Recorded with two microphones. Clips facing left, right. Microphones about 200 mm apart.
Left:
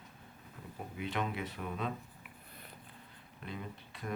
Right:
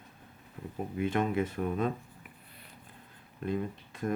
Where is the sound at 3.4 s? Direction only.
45° right (ahead or behind).